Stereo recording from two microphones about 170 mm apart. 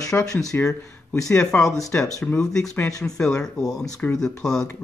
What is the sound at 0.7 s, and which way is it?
Speech, 15° left (ahead or behind).